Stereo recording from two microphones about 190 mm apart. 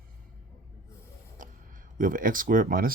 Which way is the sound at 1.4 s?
45° right (ahead or behind).